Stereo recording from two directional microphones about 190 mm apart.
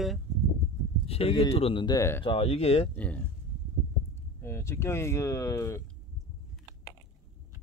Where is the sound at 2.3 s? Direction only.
30° left (ahead or behind).